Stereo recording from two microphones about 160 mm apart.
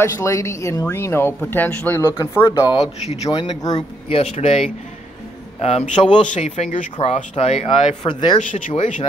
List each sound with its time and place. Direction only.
0.0 s speech: 20° left (ahead or behind)
2.8 s speech: 45° left (ahead or behind)
3.3 s speech: 25° left (ahead or behind)
4.1 s speech: 40° left (ahead or behind)
6.2 s speech: 45° left (ahead or behind); by 8.4 s 30° left (ahead or behind)
8.4 s speech: 55° left (ahead or behind)